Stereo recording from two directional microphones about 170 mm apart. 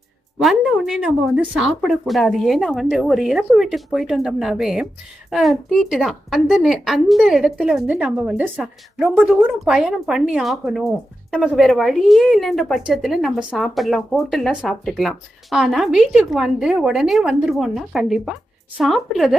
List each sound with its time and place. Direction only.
0.3 s speech: centre (ahead or behind)